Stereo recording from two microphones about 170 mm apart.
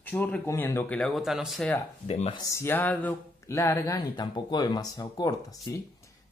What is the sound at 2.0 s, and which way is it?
Speech, 35° left (ahead or behind).